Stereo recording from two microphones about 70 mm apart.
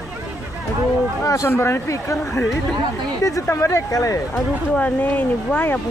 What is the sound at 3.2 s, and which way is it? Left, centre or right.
A man's voice, left.